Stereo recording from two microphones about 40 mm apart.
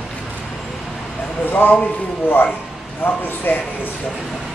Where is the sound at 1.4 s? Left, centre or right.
Left.